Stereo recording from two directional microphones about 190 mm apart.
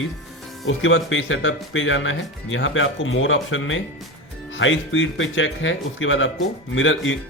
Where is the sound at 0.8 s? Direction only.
90° left.